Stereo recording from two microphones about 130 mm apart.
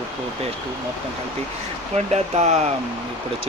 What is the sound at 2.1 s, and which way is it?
Speech, 60° right (ahead or behind).